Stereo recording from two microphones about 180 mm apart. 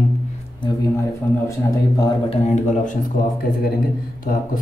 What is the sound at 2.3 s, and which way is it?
Speech, 35° left (ahead or behind).